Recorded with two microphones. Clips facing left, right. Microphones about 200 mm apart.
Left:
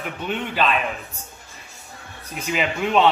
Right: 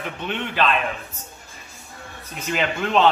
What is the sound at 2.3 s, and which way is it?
Speech, 5° left (ahead or behind).